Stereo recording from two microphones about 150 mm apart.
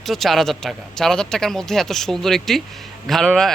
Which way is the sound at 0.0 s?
Centre (ahead or behind).